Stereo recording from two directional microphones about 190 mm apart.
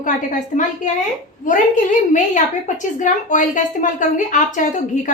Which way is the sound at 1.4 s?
40° left (ahead or behind).